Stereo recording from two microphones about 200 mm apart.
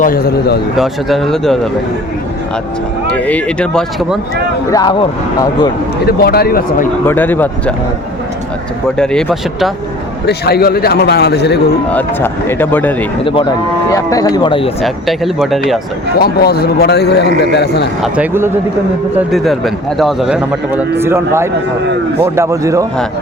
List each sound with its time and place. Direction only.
0.0 s a man's voice: 45° left (ahead or behind)
0.8 s a man's voice: centre (ahead or behind)
3.1 s speech: 5° left (ahead or behind)
4.7 s speech: 20° left (ahead or behind)
6.1 s a man's voice: 50° left (ahead or behind)
7.0 s speech: 10° left (ahead or behind)
9.0 s a man's voice: centre (ahead or behind)
10.2 s a man's voice: 50° left (ahead or behind)
11.9 s speech: 10° left (ahead or behind)
13.2 s speech: 25° left (ahead or behind)
14.8 s a man's voice: centre (ahead or behind)
16.2 s a man's voice: 50° left (ahead or behind)
18.0 s a man's voice: 10° right (ahead or behind)